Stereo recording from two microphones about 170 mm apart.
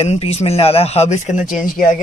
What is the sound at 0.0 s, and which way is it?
Speech, 35° left (ahead or behind).